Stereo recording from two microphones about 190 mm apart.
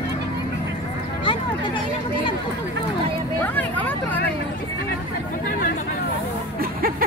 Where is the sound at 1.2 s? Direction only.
25° left (ahead or behind).